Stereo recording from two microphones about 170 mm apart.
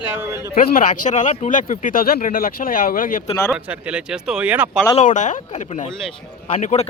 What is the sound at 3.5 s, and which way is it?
Speech, 5° right (ahead or behind).